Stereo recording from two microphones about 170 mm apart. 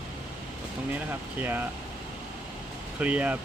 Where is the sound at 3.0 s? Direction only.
10° right (ahead or behind).